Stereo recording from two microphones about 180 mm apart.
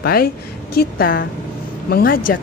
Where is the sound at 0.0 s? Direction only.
55° left (ahead or behind).